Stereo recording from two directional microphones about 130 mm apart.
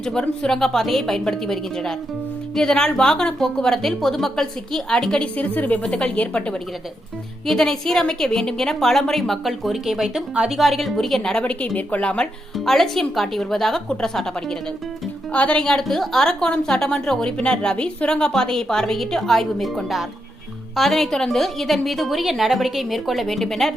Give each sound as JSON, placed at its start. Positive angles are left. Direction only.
{"t": 0.0, "sound": "a woman's voice", "side_deg": 5}